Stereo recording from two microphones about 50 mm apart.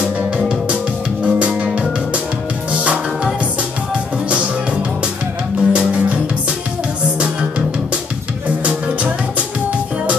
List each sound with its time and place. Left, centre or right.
0.0 s music: centre
5.7 s music: right